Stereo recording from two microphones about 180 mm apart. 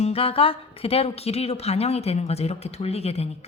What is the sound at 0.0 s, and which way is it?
A woman's voice, 35° left (ahead or behind).